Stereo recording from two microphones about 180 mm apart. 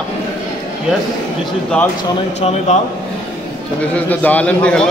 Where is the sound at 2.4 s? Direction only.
40° left (ahead or behind).